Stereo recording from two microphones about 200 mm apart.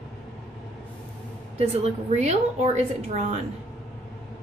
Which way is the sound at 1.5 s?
30° right (ahead or behind).